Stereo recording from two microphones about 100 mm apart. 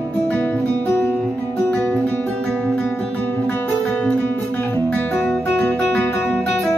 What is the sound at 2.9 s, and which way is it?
Guitar, 15° left (ahead or behind).